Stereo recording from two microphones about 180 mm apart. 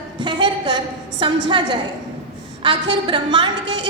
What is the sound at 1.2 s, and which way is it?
A woman's voice, 25° right (ahead or behind).